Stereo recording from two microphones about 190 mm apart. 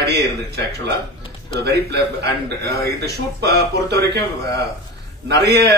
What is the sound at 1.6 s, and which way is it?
Speech, 60° right (ahead or behind).